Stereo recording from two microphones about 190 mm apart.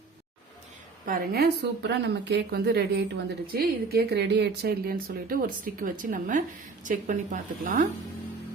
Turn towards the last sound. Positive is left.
turn(degrees=-45)  # may be behind; listen again after turning